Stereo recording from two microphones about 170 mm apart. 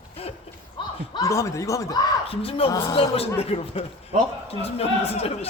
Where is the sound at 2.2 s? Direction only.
35° left (ahead or behind).